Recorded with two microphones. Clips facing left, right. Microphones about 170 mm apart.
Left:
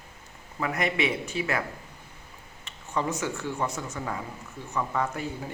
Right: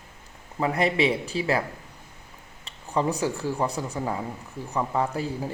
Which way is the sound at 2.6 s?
35° right (ahead or behind).